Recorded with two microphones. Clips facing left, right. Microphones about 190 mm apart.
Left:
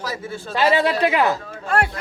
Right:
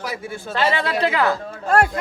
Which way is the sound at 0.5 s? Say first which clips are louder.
Left 3 dB; 15° left (ahead or behind).